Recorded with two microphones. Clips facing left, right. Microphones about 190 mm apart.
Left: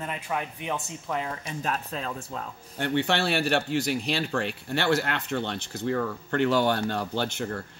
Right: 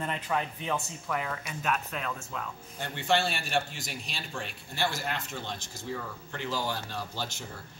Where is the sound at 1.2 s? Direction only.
30° left (ahead or behind).